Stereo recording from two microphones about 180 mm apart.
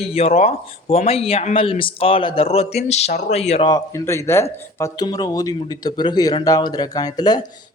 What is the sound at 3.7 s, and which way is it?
A man's voice, 20° left (ahead or behind).